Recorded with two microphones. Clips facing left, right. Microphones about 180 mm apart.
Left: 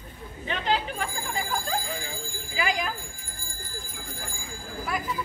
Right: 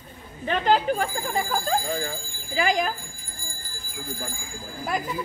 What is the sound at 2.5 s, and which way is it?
Speech, 40° right (ahead or behind).